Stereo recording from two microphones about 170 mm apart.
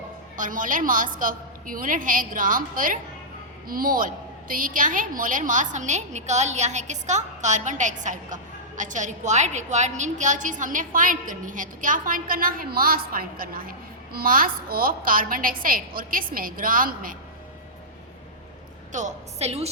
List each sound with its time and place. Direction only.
0.3 s a woman's voice: 50° right (ahead or behind)
18.9 s a woman's voice: 45° right (ahead or behind)